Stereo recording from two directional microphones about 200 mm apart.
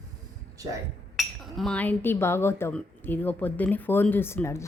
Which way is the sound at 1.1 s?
Centre (ahead or behind).